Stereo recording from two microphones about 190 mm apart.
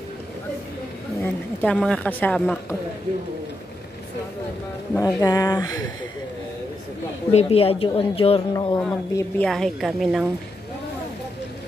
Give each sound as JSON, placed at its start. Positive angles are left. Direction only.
{"t": 1.2, "sound": "a woman's voice", "side_deg": 5}
{"t": 4.9, "sound": "speech", "side_deg": 20}
{"t": 7.2, "sound": "a woman's voice", "side_deg": 30}
{"t": 8.5, "sound": "speech", "side_deg": 20}
{"t": 9.4, "sound": "a woman's voice", "side_deg": 0}